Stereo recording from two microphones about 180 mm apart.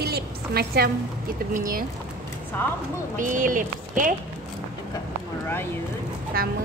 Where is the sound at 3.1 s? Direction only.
45° right (ahead or behind).